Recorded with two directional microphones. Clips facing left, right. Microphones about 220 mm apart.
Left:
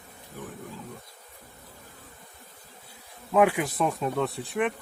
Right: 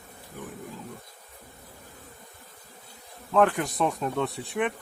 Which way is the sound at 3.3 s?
10° left (ahead or behind).